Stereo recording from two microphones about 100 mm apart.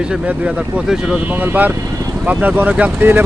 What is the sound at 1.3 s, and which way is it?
Speech, 15° right (ahead or behind).